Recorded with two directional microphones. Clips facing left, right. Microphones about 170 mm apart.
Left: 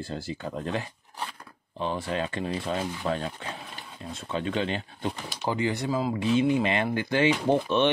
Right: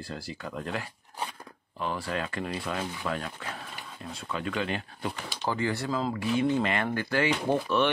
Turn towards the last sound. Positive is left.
turn(degrees=20)  # may be behind; listen again after turning